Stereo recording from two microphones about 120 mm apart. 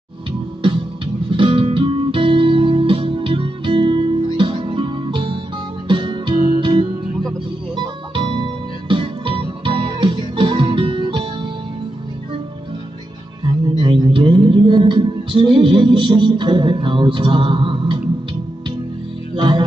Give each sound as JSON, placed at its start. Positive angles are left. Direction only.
{"t": 1.3, "sound": "music", "side_deg": -50}
{"t": 13.4, "sound": "a sound", "side_deg": -40}
{"t": 19.3, "sound": "music", "side_deg": -40}